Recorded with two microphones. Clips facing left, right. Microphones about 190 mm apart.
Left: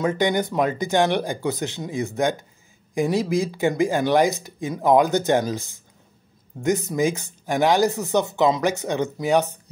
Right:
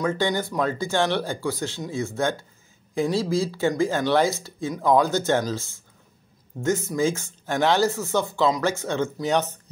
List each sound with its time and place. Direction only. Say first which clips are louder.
0.0 s speech: left 3 dB; 15° left (ahead or behind)